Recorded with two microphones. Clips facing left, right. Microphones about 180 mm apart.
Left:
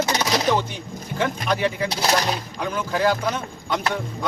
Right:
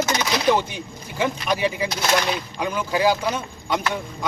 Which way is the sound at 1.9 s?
35° left (ahead or behind).